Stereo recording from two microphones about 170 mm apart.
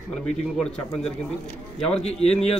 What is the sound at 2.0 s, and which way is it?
Speech, 40° left (ahead or behind).